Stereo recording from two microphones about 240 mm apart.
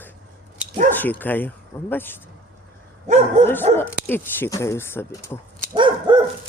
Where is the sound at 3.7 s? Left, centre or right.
Centre.